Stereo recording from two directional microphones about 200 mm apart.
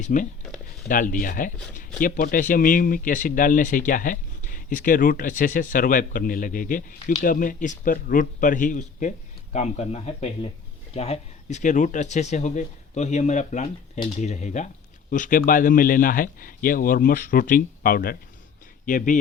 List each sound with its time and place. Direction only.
0.0 s a man's voice: 40° left (ahead or behind)